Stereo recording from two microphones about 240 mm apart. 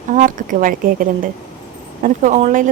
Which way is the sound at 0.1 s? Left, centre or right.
Right.